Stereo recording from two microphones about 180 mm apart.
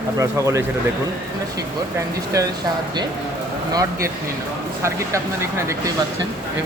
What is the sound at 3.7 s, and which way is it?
Speech, 20° right (ahead or behind).